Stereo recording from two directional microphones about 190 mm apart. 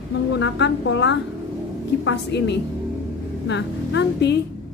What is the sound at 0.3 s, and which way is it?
A woman's voice, 70° left (ahead or behind).